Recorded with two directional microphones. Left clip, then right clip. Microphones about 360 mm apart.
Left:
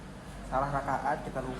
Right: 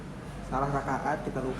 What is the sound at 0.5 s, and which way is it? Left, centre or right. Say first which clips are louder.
Speech: even; centre.